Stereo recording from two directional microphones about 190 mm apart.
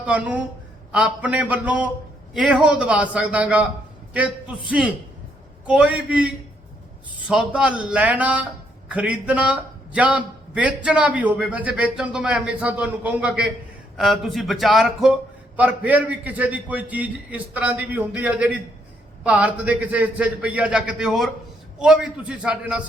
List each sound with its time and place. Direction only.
0.0 s a man's voice: 5° right (ahead or behind)